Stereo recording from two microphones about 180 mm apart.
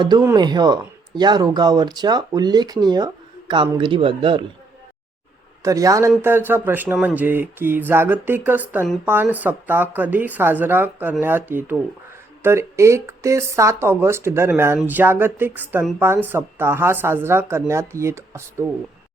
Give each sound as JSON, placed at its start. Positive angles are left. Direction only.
{"t": 0.2, "sound": "speech", "side_deg": -20}
{"t": 5.6, "sound": "speech", "side_deg": -20}